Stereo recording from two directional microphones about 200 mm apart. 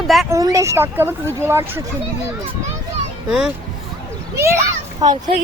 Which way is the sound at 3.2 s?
5° right (ahead or behind).